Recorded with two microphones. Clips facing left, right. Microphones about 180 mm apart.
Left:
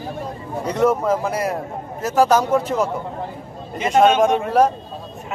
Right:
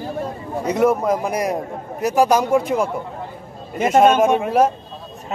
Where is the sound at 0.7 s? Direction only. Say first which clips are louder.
Right 1 dB; 10° right (ahead or behind).